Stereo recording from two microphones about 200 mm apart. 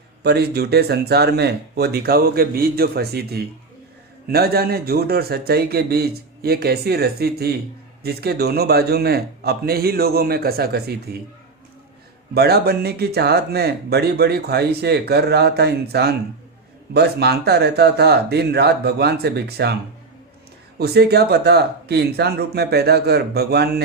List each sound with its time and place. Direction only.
0.2 s speech: 55° right (ahead or behind)
12.3 s speech: 50° right (ahead or behind)
20.7 s speech: 55° right (ahead or behind)